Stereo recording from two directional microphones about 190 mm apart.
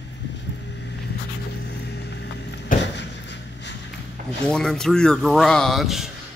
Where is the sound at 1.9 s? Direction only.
65° left (ahead or behind).